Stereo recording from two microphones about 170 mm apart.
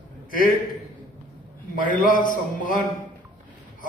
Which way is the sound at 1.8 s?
50° left (ahead or behind).